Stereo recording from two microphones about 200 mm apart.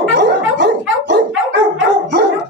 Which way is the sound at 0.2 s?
60° right (ahead or behind).